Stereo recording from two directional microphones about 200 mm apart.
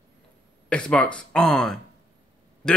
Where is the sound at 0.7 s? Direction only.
5° left (ahead or behind).